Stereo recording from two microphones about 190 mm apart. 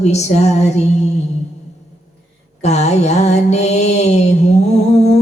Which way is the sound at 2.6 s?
35° left (ahead or behind).